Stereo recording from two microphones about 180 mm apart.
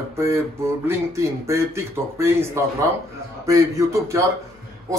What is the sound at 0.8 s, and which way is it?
Speech, 15° right (ahead or behind).